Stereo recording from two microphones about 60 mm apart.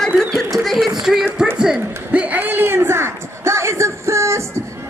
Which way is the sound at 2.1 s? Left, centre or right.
Right.